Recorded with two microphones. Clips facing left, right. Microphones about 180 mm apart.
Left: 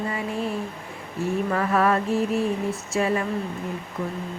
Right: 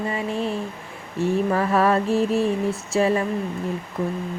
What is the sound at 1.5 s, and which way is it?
Speech, 30° right (ahead or behind).